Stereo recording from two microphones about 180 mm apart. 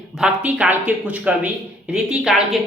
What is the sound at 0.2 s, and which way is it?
A man's voice, 5° right (ahead or behind).